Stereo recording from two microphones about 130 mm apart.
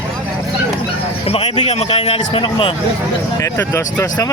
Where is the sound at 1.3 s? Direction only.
50° left (ahead or behind).